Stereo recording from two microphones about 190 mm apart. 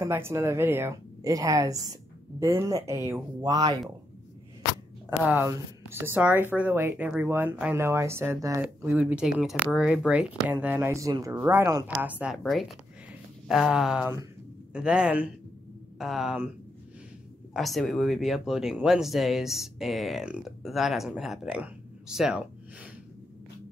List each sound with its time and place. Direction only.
0.0 s speech: 15° right (ahead or behind)
5.2 s speech: 10° right (ahead or behind)
17.6 s speech: centre (ahead or behind)